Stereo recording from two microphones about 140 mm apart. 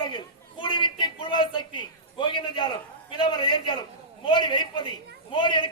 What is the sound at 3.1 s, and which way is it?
A man's voice, 35° left (ahead or behind).